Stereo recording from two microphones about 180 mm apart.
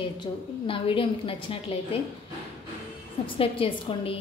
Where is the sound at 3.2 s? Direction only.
30° left (ahead or behind).